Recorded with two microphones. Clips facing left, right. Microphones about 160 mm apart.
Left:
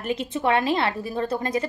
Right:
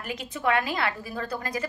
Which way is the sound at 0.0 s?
25° left (ahead or behind).